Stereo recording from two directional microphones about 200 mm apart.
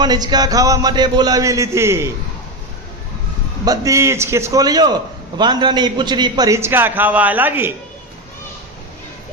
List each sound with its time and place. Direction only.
0.0 s a man's voice: 20° right (ahead or behind)
3.7 s a man's voice: 15° right (ahead or behind)